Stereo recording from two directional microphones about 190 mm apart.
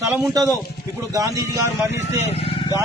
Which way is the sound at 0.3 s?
20° right (ahead or behind).